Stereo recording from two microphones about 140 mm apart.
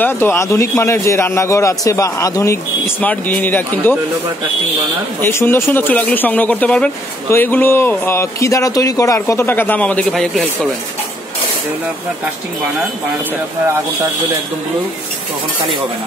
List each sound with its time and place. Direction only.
0.0 s a man's voice: 15° left (ahead or behind)
5.2 s a man's voice: 15° left (ahead or behind)